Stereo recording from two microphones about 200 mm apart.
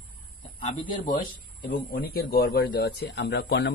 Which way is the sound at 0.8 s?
25° left (ahead or behind).